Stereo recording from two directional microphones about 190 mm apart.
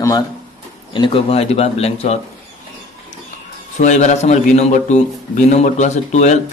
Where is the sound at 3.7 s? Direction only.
40° left (ahead or behind).